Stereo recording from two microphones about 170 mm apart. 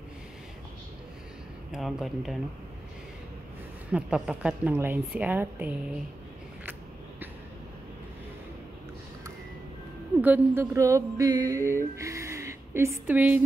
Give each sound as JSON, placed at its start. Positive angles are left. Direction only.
{"t": 1.7, "sound": "speech", "side_deg": 0}
{"t": 3.9, "sound": "a woman's voice", "side_deg": -5}
{"t": 10.2, "sound": "a sound", "side_deg": -10}